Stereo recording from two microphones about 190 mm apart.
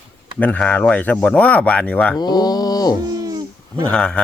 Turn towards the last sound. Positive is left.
turn(degrees=5)  # may be behind; listen again after turning